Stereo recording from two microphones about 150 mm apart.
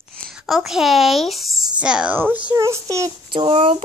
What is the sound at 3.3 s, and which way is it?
Speech, 30° right (ahead or behind).